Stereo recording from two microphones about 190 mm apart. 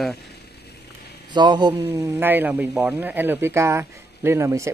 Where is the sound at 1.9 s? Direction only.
15° right (ahead or behind).